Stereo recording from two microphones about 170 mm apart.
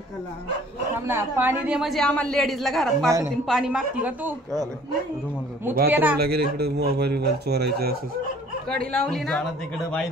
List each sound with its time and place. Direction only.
1.0 s speech: 15° right (ahead or behind)
5.9 s speech: 10° right (ahead or behind)
6.1 s speech: 65° right (ahead or behind)
8.9 s speech: 5° left (ahead or behind)